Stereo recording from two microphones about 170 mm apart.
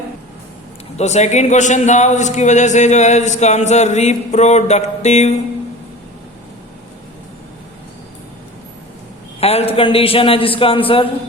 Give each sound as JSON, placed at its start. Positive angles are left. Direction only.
{"t": 0.9, "sound": "a man's voice", "side_deg": 40}
{"t": 9.4, "sound": "a man's voice", "side_deg": 35}